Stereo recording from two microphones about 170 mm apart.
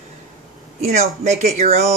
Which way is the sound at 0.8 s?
45° right (ahead or behind).